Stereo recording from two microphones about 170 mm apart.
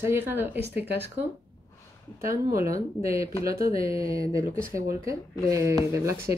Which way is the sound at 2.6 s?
20° right (ahead or behind).